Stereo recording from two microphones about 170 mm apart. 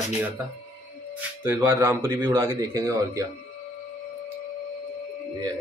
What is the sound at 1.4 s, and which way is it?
Speech, 10° right (ahead or behind).